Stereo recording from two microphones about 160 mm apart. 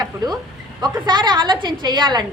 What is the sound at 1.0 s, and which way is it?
A woman's voice, 25° right (ahead or behind).